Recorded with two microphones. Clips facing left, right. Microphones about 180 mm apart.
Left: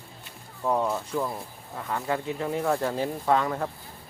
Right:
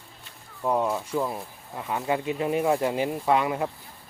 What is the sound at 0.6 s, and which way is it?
Speech, 10° right (ahead or behind).